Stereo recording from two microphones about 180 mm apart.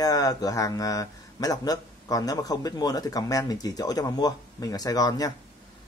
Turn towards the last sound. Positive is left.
turn(degrees=20)  # may be behind; listen again after turning